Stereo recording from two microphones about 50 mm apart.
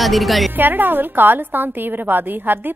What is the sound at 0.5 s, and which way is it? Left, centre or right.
A woman's voice, right.